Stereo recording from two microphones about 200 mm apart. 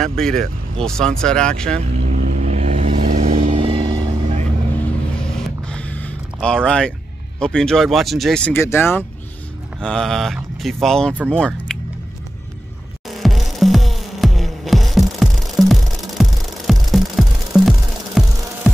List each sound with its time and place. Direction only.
0.0 s speech: 5° left (ahead or behind)
2.0 s vehicle: 40° right (ahead or behind)
5.1 s a sound: 5° left (ahead or behind)
7.3 s speech: 5° left (ahead or behind)
13.1 s music: centre (ahead or behind)